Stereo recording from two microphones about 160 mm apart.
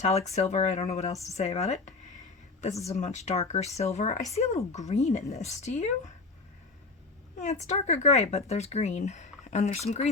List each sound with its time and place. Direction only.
0.0 s speech: 45° left (ahead or behind)
7.3 s speech: 45° left (ahead or behind)